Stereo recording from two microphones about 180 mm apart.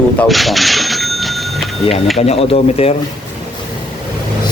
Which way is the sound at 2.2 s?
35° left (ahead or behind).